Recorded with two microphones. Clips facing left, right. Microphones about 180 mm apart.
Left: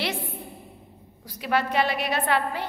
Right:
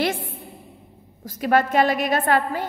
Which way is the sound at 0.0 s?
45° right (ahead or behind).